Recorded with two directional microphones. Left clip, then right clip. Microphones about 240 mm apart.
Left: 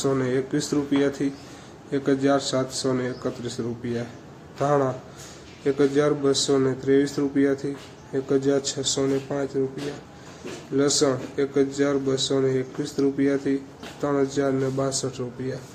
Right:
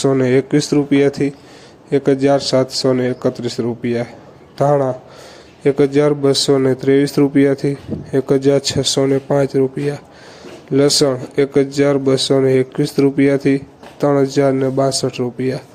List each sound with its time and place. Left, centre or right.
0.0 s a man's voice: right
10.8 s speech: right